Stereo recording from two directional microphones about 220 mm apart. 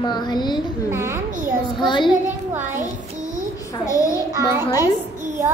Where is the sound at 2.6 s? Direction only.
35° right (ahead or behind).